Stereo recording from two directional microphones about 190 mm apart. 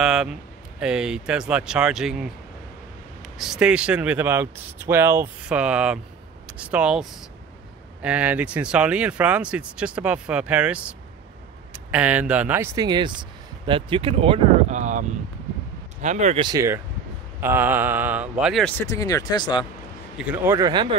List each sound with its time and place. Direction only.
0.0 s a sound: centre (ahead or behind)
0.7 s speech: 5° right (ahead or behind)
3.3 s speech: 5° right (ahead or behind); by 16.4 s 35° right (ahead or behind)
16.4 s speech: 15° right (ahead or behind); by 19.6 s 25° left (ahead or behind)
20.2 s speech: 10° right (ahead or behind)